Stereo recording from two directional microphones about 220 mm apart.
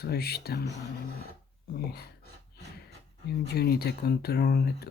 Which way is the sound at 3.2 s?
45° left (ahead or behind).